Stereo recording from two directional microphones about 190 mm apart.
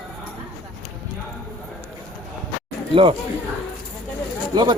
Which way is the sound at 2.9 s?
30° right (ahead or behind).